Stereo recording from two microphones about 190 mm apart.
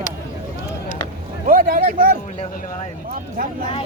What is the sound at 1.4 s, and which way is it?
Speech, 50° right (ahead or behind).